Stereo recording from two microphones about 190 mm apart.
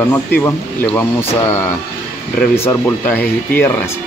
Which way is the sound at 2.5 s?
10° left (ahead or behind).